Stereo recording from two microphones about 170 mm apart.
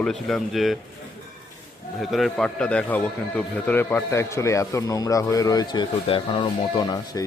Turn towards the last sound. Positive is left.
turn(degrees=25)  # may be behind; listen again after turning